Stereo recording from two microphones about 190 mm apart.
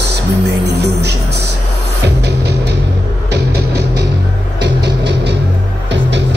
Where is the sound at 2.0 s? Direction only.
60° right (ahead or behind).